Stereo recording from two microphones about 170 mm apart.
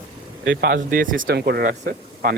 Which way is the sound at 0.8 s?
55° right (ahead or behind).